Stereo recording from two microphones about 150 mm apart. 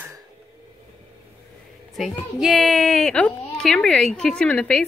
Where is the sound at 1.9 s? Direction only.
Centre (ahead or behind).